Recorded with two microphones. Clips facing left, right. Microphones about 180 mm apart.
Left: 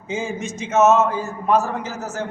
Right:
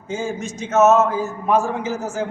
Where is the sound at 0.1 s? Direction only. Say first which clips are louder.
Right 1 dB; centre (ahead or behind).